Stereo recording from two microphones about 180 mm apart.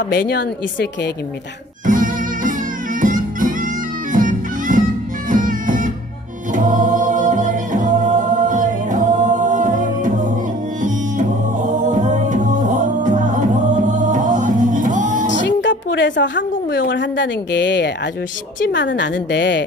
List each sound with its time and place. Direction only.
0.1 s a woman's voice: 60° left (ahead or behind)
1.9 s music: 45° right (ahead or behind)
6.5 s choir: 45° right (ahead or behind)
10.8 s music: 45° right (ahead or behind)
15.2 s music: 90° left
16.9 s speech: 90° left
18.7 s speech: 90° left